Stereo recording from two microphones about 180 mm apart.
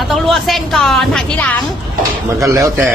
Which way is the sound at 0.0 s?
Centre (ahead or behind).